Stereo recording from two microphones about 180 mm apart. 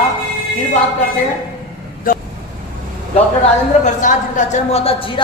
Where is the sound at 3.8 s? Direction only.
45° left (ahead or behind).